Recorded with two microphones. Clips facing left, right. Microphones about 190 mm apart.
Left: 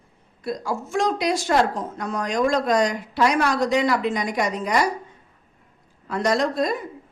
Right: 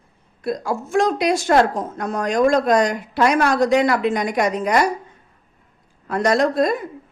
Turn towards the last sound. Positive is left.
turn(degrees=-55)  # may be behind; listen again after turning